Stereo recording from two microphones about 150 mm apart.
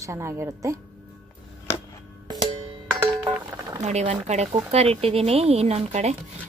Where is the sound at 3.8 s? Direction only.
50° right (ahead or behind).